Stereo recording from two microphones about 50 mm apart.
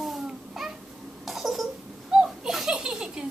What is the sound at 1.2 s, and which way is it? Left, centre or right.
Cough, centre.